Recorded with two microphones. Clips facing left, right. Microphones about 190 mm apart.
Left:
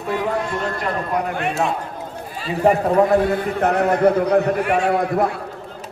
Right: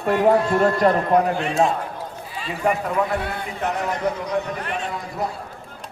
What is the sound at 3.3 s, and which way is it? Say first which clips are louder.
A man's voice: left 8 dB; 60° left (ahead or behind).